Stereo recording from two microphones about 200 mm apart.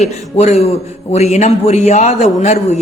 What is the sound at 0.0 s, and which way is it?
A woman's voice, 35° left (ahead or behind).